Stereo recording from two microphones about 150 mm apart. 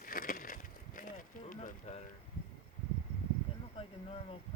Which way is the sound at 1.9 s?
45° left (ahead or behind).